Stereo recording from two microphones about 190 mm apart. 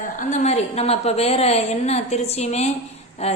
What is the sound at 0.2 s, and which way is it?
A woman's voice, 40° left (ahead or behind).